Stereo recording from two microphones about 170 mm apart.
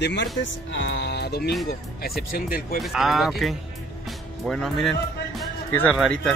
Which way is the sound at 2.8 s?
Centre (ahead or behind).